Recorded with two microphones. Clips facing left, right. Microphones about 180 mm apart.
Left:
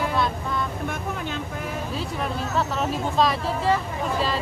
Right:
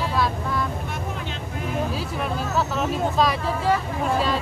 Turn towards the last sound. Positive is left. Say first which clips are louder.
# right 2 dB
turn(degrees=0)  # may be behind; listen again after turning